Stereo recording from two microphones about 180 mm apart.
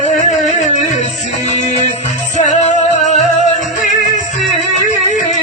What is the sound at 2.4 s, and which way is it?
Music, 40° left (ahead or behind).